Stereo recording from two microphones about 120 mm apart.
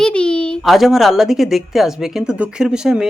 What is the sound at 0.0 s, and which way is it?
A woman's voice, 10° left (ahead or behind).